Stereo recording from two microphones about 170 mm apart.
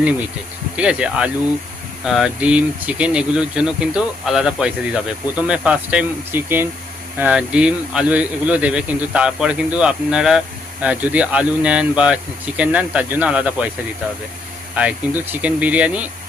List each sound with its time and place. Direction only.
0.8 s speech: 5° right (ahead or behind)
14.8 s speech: 10° right (ahead or behind)